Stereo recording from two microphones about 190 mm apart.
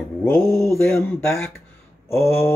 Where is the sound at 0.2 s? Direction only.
10° left (ahead or behind).